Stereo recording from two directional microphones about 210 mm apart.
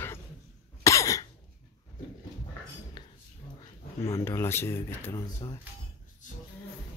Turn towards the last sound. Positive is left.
turn(degrees=15)  # may be behind; listen again after turning